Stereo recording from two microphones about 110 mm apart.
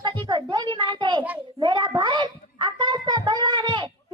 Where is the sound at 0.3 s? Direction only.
45° right (ahead or behind).